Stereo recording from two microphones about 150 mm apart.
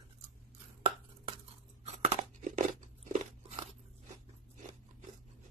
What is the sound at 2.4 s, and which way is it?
Crunch, 55° right (ahead or behind).